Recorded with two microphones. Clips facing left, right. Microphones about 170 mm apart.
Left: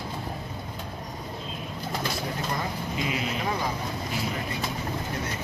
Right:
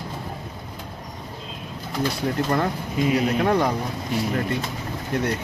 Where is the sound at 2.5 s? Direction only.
60° right (ahead or behind).